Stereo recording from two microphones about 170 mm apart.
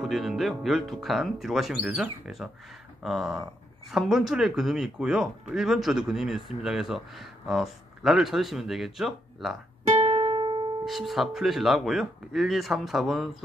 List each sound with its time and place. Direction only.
0.0 s speech: centre (ahead or behind)
9.8 s music: 35° right (ahead or behind)
10.9 s speech: centre (ahead or behind)